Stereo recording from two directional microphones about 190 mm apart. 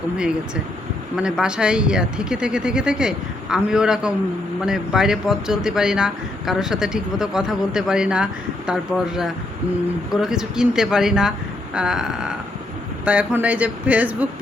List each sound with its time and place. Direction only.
1.1 s speech: 5° right (ahead or behind)